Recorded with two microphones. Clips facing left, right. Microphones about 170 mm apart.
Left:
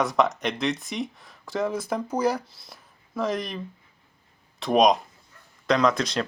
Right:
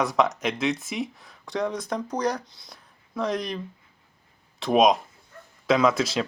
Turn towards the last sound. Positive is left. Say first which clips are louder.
# right 1 dB
turn(degrees=-5)  # may be behind; listen again after turning